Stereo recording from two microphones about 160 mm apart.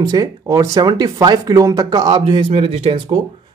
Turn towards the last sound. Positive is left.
turn(degrees=-35)  # may be behind; listen again after turning